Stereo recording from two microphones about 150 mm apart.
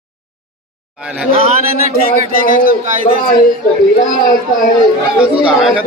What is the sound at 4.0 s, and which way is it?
Speech, 60° left (ahead or behind).